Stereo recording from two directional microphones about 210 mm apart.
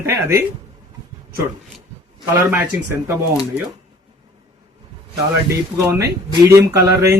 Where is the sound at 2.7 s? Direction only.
10° right (ahead or behind).